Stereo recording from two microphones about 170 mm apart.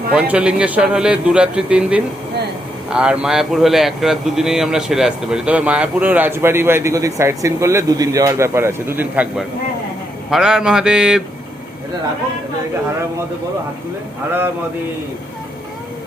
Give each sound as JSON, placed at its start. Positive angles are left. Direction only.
{"t": 0.1, "sound": "speech", "side_deg": -5}